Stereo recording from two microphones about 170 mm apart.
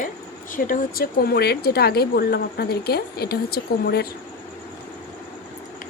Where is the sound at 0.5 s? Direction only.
55° left (ahead or behind).